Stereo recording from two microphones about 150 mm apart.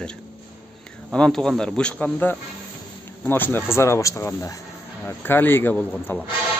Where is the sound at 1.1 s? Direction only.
5° left (ahead or behind).